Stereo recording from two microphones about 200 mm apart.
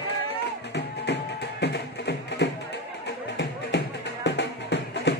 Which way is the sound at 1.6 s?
55° left (ahead or behind).